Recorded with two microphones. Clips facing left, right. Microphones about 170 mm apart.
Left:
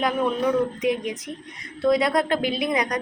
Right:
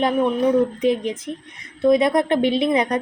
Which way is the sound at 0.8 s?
30° right (ahead or behind).